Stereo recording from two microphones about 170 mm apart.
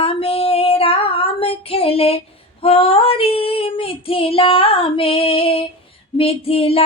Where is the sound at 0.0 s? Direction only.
35° left (ahead or behind).